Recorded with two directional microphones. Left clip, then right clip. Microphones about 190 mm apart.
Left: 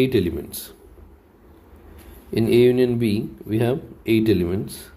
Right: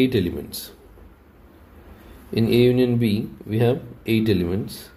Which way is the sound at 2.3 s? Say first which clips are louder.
Left 2 dB; 20° left (ahead or behind).